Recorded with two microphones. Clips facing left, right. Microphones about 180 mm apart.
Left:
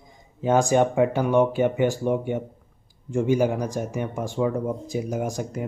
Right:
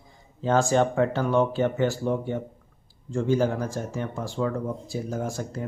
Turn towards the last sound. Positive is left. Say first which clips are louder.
# left 3 dB
turn(degrees=15)  # may be behind; listen again after turning